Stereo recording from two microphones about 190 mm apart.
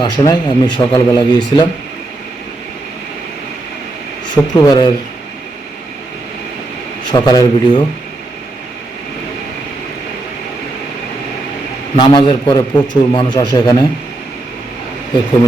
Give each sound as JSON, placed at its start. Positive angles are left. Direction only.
{"t": 0.0, "sound": "a man's voice", "side_deg": 25}
{"t": 4.5, "sound": "a man's voice", "side_deg": 20}
{"t": 7.1, "sound": "a man's voice", "side_deg": 20}
{"t": 11.9, "sound": "a man's voice", "side_deg": 25}